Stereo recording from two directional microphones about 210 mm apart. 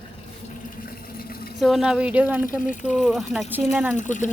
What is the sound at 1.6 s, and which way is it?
Speech, centre (ahead or behind).